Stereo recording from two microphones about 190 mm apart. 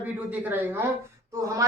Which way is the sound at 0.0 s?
10° right (ahead or behind).